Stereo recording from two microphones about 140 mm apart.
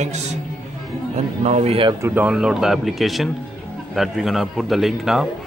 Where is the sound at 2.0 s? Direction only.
10° right (ahead or behind).